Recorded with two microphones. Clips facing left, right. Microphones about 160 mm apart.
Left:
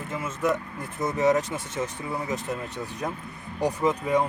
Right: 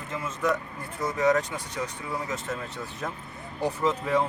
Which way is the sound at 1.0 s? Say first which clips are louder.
Left 1 dB; 20° left (ahead or behind).